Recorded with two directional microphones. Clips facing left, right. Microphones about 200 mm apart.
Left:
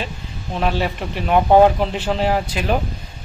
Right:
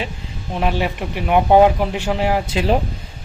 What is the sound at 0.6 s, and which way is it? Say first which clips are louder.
Speech: even; 15° right (ahead or behind).